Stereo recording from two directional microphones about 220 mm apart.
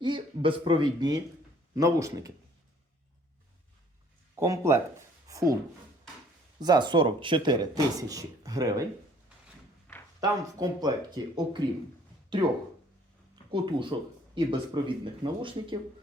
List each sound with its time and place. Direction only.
0.0 s a man's voice: 25° right (ahead or behind)
4.4 s speech: 15° right (ahead or behind)
6.6 s speech: 20° right (ahead or behind)
10.2 s speech: 20° right (ahead or behind)
13.5 s speech: 20° right (ahead or behind)